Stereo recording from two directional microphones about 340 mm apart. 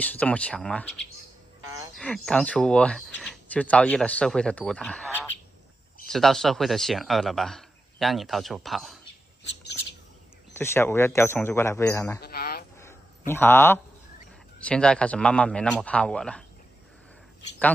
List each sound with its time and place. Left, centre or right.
0.0 s a man's voice: centre
10.6 s speech: centre
12.2 s a sound: left
13.3 s a man's voice: centre